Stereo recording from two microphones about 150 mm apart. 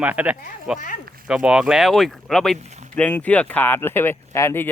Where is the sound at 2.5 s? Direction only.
50° right (ahead or behind).